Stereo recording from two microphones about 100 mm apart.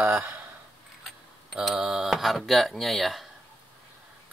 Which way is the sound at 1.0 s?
Centre (ahead or behind).